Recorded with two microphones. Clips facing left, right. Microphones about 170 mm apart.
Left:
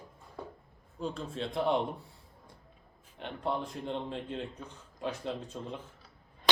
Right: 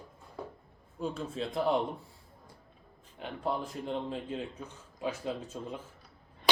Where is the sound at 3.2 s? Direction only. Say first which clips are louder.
Even; 5° right (ahead or behind).